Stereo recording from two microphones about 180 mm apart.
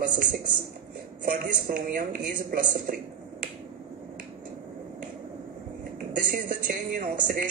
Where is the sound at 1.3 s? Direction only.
50° right (ahead or behind).